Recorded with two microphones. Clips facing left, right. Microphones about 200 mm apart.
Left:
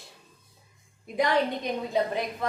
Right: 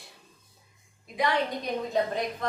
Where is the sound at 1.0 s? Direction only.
50° left (ahead or behind).